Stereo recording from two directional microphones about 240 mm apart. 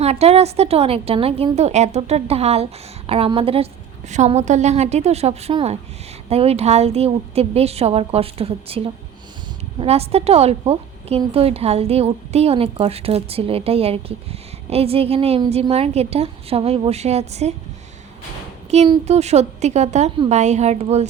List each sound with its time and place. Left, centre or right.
0.0 s a woman's voice: right
18.7 s a woman's voice: right